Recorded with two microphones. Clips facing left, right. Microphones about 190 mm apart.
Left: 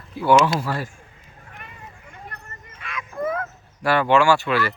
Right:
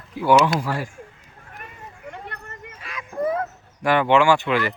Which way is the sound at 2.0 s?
65° right (ahead or behind).